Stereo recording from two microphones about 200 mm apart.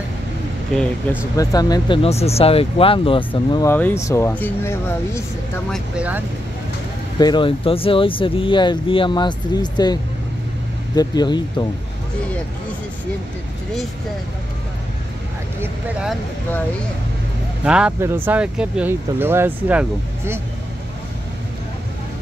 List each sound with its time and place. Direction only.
1.3 s speech: 15° left (ahead or behind)
2.0 s speech: 30° left (ahead or behind)
3.6 s speech: 10° left (ahead or behind)
5.7 s speech: 5° right (ahead or behind)
7.2 s speech: 20° left (ahead or behind)
11.0 s speech: 20° left (ahead or behind)
15.6 s speech: 5° right (ahead or behind)
17.6 s speech: 5° right (ahead or behind)